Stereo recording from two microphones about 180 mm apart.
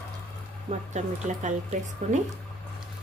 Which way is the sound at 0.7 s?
40° right (ahead or behind).